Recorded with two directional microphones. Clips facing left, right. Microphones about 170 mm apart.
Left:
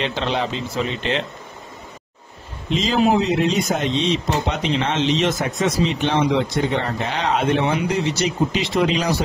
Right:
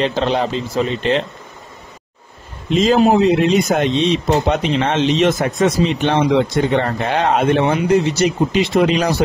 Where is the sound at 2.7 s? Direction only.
50° right (ahead or behind).